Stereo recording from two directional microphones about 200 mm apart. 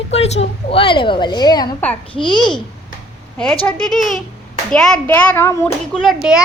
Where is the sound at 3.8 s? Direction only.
Centre (ahead or behind).